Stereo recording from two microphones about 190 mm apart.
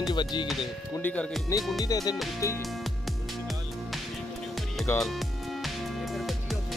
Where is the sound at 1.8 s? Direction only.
20° left (ahead or behind).